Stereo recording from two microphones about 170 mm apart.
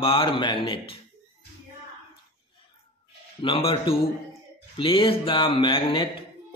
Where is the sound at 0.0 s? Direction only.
30° left (ahead or behind).